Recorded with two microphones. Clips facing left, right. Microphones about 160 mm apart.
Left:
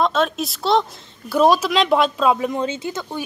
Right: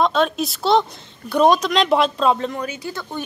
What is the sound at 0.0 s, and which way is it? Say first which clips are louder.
Speech: right 1 dB; centre (ahead or behind).